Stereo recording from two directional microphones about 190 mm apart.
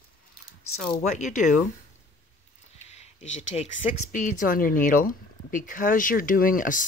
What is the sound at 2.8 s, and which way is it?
Speech, 35° left (ahead or behind).